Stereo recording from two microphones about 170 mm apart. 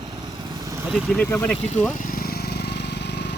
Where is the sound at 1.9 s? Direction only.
55° left (ahead or behind); by 3.3 s 90° left.